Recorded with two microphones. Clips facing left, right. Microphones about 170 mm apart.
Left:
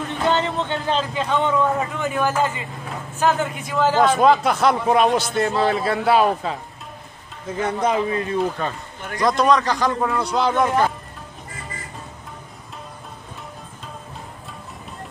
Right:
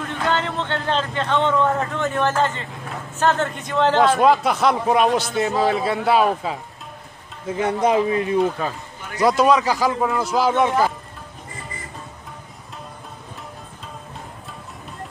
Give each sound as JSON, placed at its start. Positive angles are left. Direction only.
{"t": 0.0, "sound": "a man's voice", "side_deg": 20}
{"t": 7.5, "sound": "a man's voice", "side_deg": -15}
{"t": 8.4, "sound": "a man's voice", "side_deg": 0}